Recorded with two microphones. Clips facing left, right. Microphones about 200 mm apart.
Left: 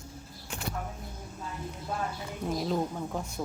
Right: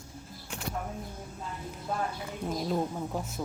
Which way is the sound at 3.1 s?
5° right (ahead or behind).